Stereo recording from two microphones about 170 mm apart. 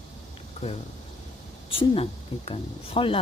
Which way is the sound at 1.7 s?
35° left (ahead or behind).